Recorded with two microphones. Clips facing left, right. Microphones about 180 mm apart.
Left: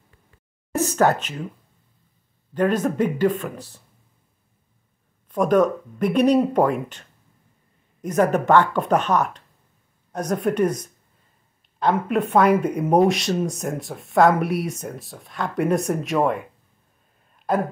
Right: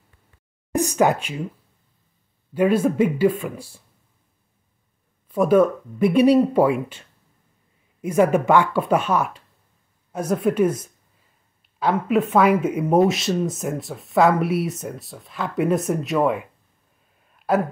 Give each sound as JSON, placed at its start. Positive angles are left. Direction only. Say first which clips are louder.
{"t": 0.7, "sound": "speech", "louder": "even", "side_deg": -15}
{"t": 2.5, "sound": "speech", "louder": "right 2 dB", "side_deg": -10}
{"t": 5.3, "sound": "speech", "louder": "right 2 dB", "side_deg": -5}